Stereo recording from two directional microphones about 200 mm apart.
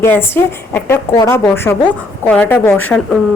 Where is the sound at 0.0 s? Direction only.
10° left (ahead or behind).